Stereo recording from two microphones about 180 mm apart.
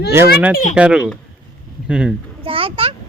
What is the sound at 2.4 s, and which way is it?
Speech, 30° right (ahead or behind).